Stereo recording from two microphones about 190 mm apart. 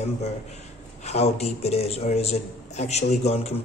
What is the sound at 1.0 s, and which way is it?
A man's voice, 35° left (ahead or behind).